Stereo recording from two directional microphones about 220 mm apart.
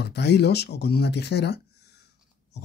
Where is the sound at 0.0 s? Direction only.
50° left (ahead or behind).